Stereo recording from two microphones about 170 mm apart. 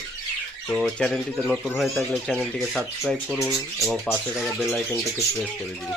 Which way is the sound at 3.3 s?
15° left (ahead or behind).